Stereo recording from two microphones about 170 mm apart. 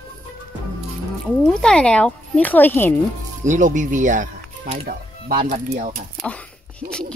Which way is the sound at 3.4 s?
45° right (ahead or behind).